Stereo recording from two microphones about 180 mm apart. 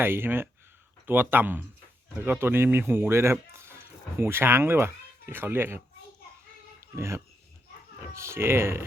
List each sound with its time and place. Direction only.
0.0 s speech: 10° right (ahead or behind)
6.7 s a sound: 15° right (ahead or behind)
8.1 s speech: 15° right (ahead or behind)